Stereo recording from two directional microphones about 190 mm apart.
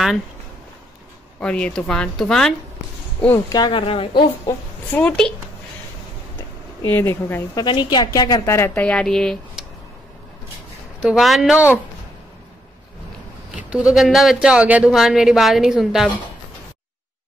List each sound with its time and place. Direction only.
1.4 s a woman's voice: 5° left (ahead or behind)
3.5 s speech: 25° left (ahead or behind)
4.5 s speech: 5° left (ahead or behind)
6.9 s a woman's voice: 10° left (ahead or behind)
7.6 s a woman's voice: 25° left (ahead or behind); by 9.7 s 5° left (ahead or behind)
11.0 s speech: 5° right (ahead or behind)
13.5 s speech: 5° right (ahead or behind)